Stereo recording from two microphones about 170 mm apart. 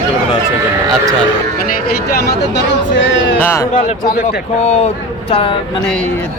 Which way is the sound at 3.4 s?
15° left (ahead or behind).